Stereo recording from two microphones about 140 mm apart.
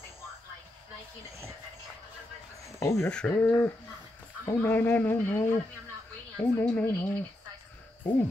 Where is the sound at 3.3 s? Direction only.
15° left (ahead or behind).